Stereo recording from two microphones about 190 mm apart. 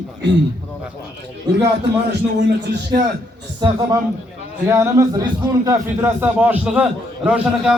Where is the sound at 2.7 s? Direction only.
55° right (ahead or behind).